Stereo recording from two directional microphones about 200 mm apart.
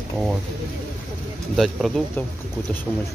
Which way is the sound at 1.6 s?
Centre (ahead or behind).